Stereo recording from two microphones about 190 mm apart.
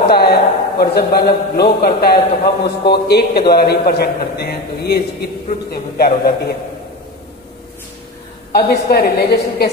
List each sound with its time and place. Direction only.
0.1 s a man's voice: 55° left (ahead or behind)
8.5 s a man's voice: 55° left (ahead or behind)